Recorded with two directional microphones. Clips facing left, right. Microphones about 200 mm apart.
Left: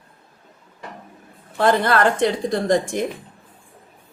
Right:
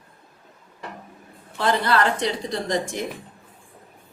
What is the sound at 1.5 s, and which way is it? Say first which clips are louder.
A woman's voice: left 4 dB; 50° left (ahead or behind).